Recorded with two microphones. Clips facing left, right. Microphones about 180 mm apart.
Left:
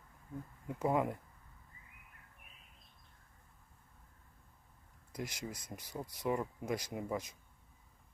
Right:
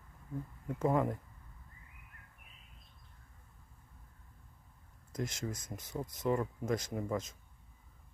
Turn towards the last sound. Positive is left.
turn(degrees=10)  # may be behind; listen again after turning